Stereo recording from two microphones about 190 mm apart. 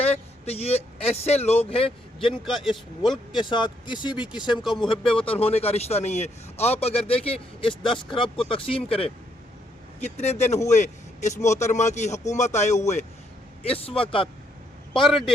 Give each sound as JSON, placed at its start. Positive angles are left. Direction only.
{"t": 0.0, "sound": "speech", "side_deg": 35}
{"t": 2.4, "sound": "speech", "side_deg": 0}
{"t": 3.3, "sound": "speech", "side_deg": 25}
{"t": 4.6, "sound": "speech", "side_deg": 0}
{"t": 5.4, "sound": "a man's voice", "side_deg": 30}